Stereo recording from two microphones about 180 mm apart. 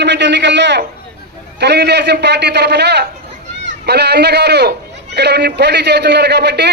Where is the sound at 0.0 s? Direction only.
75° right (ahead or behind).